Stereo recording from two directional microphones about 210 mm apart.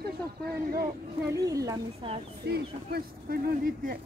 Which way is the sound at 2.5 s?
45° right (ahead or behind).